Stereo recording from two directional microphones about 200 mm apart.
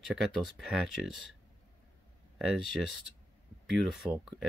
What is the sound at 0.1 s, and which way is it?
Speech, centre (ahead or behind).